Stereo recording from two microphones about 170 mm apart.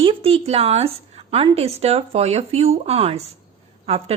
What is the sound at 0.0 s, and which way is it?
Speech, 30° right (ahead or behind).